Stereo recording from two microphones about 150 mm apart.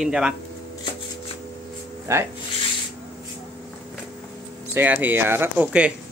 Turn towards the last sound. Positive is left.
turn(degrees=-10)  # may be behind; listen again after turning